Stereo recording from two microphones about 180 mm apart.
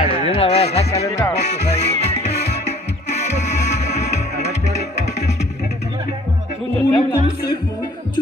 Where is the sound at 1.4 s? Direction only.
70° left (ahead or behind).